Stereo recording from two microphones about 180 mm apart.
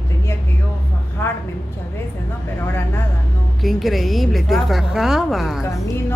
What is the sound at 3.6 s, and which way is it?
A woman's voice, centre (ahead or behind).